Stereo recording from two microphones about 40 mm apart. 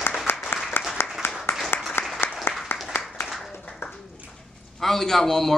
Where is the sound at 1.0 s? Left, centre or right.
Left.